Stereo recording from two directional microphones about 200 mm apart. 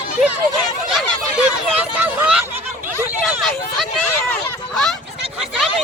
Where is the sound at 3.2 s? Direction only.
Centre (ahead or behind).